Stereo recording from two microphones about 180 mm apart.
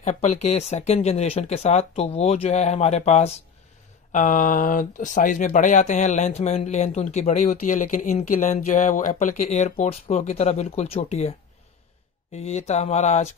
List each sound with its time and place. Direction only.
0.0 s speech: 40° left (ahead or behind)